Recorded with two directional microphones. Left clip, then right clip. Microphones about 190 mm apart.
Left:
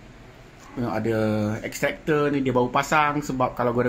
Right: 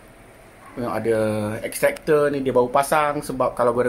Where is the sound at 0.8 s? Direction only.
Centre (ahead or behind).